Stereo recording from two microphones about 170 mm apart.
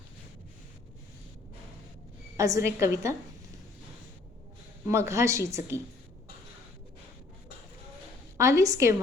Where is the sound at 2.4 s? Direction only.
20° right (ahead or behind).